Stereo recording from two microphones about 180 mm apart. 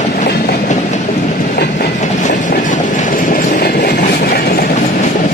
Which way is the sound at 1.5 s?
65° left (ahead or behind).